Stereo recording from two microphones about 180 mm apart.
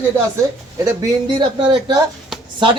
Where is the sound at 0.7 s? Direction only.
20° right (ahead or behind).